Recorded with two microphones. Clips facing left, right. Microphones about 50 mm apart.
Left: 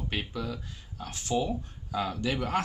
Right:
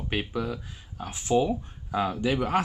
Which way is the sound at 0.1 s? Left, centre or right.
Right.